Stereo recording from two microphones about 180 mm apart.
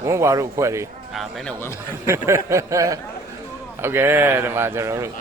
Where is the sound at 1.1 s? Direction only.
Centre (ahead or behind).